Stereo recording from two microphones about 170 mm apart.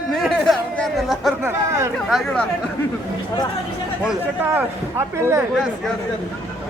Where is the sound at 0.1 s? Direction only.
Centre (ahead or behind).